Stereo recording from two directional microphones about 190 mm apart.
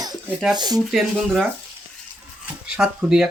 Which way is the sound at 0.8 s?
Centre (ahead or behind).